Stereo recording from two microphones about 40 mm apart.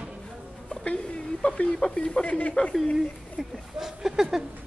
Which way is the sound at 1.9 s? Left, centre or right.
Centre.